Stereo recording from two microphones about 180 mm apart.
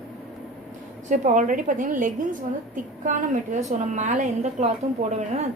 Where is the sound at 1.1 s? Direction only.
45° right (ahead or behind).